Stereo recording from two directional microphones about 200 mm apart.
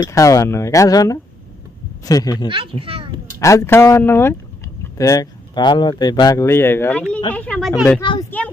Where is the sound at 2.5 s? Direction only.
25° right (ahead or behind).